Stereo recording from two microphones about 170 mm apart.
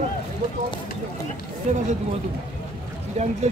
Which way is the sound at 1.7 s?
45° right (ahead or behind).